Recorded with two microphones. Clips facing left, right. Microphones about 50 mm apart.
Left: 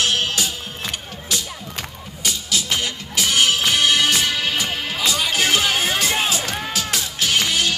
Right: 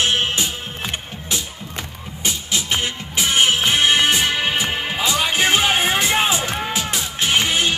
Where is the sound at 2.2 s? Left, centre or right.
Right.